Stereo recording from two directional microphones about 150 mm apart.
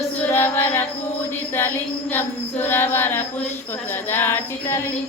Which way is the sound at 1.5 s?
15° left (ahead or behind).